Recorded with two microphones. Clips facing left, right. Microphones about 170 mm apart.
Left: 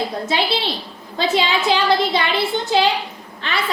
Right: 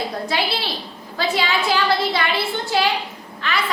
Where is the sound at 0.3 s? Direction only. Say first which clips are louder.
Left 4 dB; 20° left (ahead or behind).